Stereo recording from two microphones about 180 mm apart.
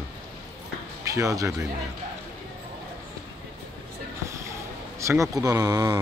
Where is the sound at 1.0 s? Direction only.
15° right (ahead or behind).